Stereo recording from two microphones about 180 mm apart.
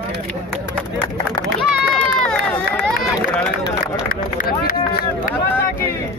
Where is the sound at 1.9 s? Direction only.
5° left (ahead or behind).